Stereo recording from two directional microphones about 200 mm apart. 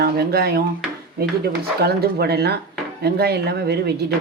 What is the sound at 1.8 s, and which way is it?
Speech, 50° right (ahead or behind).